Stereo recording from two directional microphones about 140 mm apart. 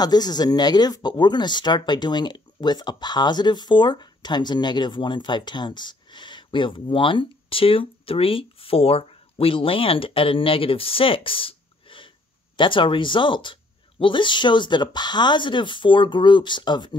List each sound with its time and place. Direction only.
0.0 s speech: 30° left (ahead or behind)